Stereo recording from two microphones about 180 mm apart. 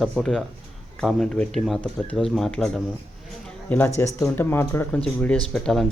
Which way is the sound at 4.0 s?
15° left (ahead or behind).